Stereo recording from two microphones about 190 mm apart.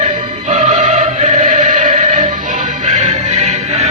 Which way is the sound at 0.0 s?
35° right (ahead or behind).